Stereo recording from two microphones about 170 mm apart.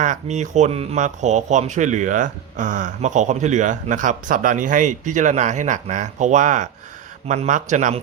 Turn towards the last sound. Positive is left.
turn(degrees=-45)  # may be behind; listen again after turning